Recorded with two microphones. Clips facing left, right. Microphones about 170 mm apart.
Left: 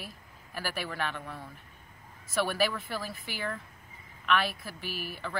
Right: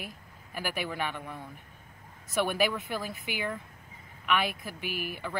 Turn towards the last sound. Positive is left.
turn(degrees=-15)  # may be behind; listen again after turning